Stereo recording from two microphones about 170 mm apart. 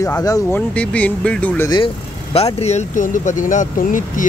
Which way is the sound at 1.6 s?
30° left (ahead or behind).